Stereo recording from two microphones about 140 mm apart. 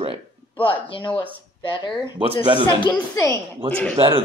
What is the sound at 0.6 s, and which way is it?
Speech, 35° left (ahead or behind).